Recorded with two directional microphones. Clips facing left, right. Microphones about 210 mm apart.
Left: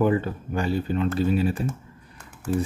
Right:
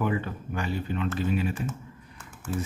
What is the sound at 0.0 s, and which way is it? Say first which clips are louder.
Speech: left 7 dB; 35° left (ahead or behind).